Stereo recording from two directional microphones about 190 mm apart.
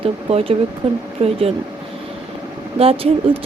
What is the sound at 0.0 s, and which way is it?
Speech, 30° right (ahead or behind).